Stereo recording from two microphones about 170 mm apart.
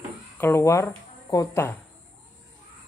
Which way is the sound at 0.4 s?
15° left (ahead or behind).